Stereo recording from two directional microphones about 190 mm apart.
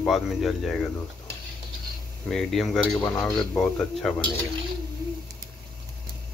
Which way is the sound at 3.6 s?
5° left (ahead or behind).